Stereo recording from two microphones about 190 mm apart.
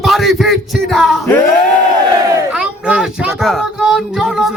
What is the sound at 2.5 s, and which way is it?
Speech, 5° right (ahead or behind).